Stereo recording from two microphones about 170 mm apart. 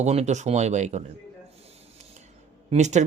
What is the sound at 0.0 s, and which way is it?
Speech, 40° right (ahead or behind).